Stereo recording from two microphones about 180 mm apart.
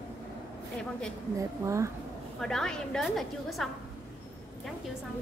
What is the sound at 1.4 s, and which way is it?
Speech, 15° right (ahead or behind).